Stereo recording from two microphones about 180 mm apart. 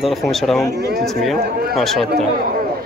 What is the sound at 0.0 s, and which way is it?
Speech, centre (ahead or behind).